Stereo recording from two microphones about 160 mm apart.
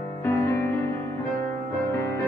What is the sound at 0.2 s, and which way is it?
Music, 15° left (ahead or behind).